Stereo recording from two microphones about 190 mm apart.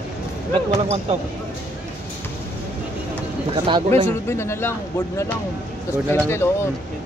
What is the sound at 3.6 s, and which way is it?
Speech, 25° right (ahead or behind).